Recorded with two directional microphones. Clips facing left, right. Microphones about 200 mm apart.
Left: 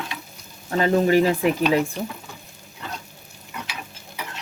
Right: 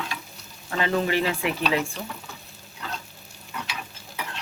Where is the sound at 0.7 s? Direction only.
40° left (ahead or behind).